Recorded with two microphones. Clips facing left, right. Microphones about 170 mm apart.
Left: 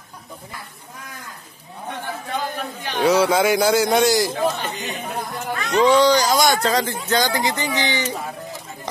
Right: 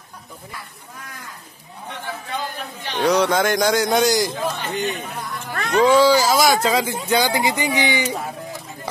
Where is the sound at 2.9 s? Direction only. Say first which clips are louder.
Left 1 dB; 5° left (ahead or behind).